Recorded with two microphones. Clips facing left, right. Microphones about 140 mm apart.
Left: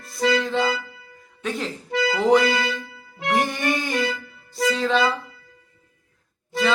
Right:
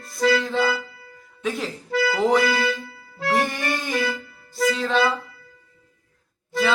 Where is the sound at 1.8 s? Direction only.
20° left (ahead or behind).